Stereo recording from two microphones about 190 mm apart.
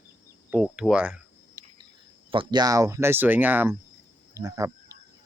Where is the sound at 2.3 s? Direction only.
25° right (ahead or behind).